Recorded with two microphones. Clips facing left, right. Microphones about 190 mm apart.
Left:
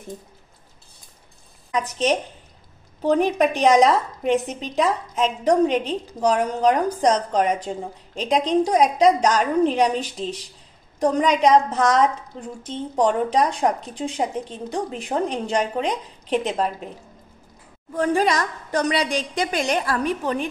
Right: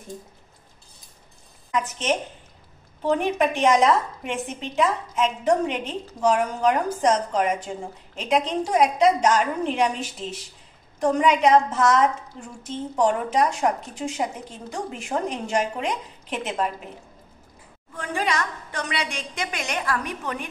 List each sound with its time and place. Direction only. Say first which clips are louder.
1.7 s a woman's voice: left 3 dB; 35° left (ahead or behind)
17.9 s a woman's voice: left 7 dB; 40° left (ahead or behind)